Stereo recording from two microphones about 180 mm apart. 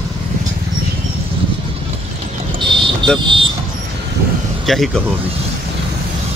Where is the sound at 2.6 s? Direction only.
25° right (ahead or behind).